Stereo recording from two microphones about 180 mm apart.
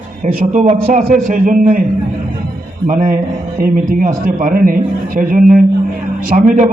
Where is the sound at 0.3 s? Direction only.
45° right (ahead or behind).